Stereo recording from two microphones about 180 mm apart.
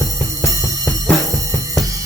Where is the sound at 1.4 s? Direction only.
20° right (ahead or behind).